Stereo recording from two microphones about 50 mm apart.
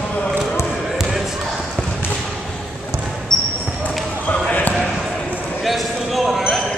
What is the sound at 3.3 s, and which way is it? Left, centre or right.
Basketball bounce, centre.